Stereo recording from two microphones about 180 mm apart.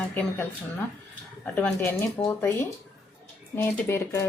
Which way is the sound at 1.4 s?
10° left (ahead or behind).